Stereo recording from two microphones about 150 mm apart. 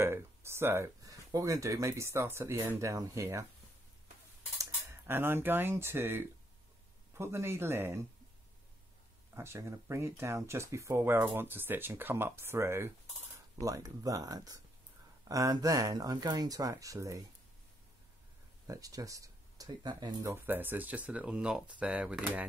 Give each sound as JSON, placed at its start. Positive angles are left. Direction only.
{"t": 0.0, "sound": "speech", "side_deg": -15}
{"t": 4.6, "sound": "speech", "side_deg": -15}
{"t": 9.3, "sound": "speech", "side_deg": -20}
{"t": 18.7, "sound": "speech", "side_deg": -25}